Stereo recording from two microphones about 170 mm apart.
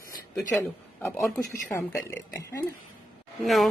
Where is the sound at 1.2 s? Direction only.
Centre (ahead or behind).